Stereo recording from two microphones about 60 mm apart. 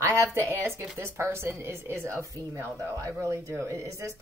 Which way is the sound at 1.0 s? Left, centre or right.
Right.